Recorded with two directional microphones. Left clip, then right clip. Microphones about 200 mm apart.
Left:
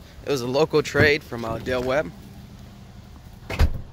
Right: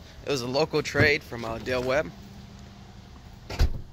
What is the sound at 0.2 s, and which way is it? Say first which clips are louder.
Speech: left 4 dB; 15° left (ahead or behind).